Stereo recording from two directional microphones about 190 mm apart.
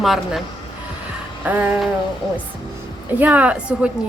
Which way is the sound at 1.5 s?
10° right (ahead or behind).